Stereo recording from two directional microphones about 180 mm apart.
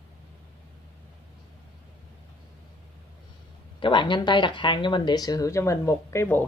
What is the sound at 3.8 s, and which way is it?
Speech, 25° left (ahead or behind).